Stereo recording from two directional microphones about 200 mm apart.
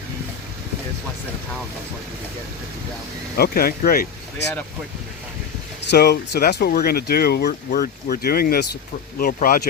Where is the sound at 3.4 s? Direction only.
50° left (ahead or behind).